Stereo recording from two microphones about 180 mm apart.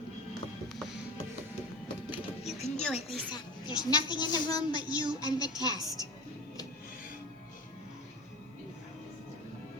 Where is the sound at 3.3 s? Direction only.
25° left (ahead or behind).